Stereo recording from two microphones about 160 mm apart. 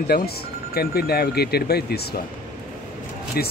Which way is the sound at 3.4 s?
70° left (ahead or behind).